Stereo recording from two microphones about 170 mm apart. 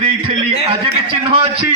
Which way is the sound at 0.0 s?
35° right (ahead or behind).